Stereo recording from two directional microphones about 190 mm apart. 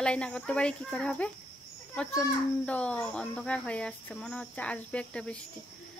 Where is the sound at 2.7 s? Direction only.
5° left (ahead or behind).